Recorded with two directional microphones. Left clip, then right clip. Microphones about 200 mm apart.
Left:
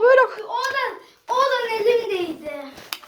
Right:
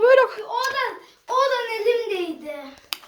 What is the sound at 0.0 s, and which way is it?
Children playing, 10° right (ahead or behind).